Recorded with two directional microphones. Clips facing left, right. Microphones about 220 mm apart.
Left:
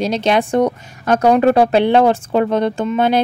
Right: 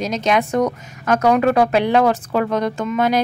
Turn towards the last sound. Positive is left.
turn(degrees=30)  # may be behind; listen again after turning